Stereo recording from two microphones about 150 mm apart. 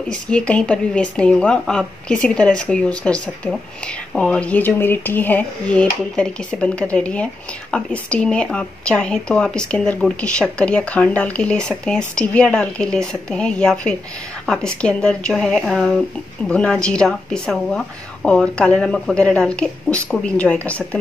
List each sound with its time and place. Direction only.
0.1 s speech: 5° left (ahead or behind)